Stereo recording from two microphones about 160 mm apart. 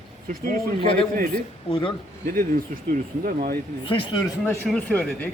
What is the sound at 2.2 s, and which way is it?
Speech, 65° right (ahead or behind).